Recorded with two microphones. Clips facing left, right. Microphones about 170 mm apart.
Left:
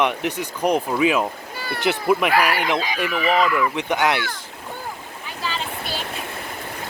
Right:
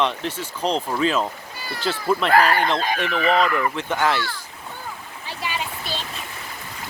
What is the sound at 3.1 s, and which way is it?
Speech, 35° right (ahead or behind).